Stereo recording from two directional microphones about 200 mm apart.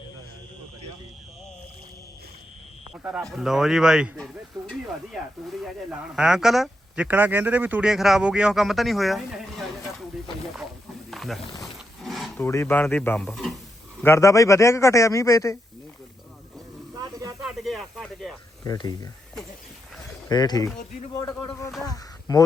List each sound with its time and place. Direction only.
2.9 s speech: 5° right (ahead or behind)
11.1 s snake: centre (ahead or behind)
11.6 s wild animals: centre (ahead or behind)
12.4 s a man's voice: 10° left (ahead or behind)
14.0 s a man's voice: 15° left (ahead or behind)
16.9 s roaring cats: 20° right (ahead or behind)
17.4 s speech: centre (ahead or behind)
18.6 s speech: 20° left (ahead or behind)
20.2 s a man's voice: 20° left (ahead or behind)